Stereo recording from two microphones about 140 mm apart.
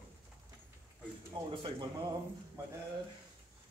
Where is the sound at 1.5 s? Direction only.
40° right (ahead or behind).